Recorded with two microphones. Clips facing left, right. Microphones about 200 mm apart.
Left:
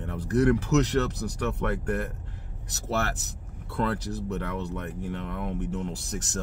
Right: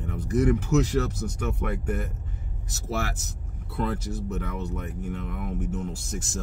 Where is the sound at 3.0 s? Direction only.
Centre (ahead or behind).